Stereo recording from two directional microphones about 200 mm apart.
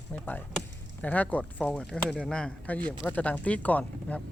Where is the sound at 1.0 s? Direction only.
5° left (ahead or behind).